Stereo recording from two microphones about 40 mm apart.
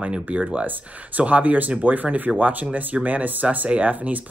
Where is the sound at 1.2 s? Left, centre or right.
Right.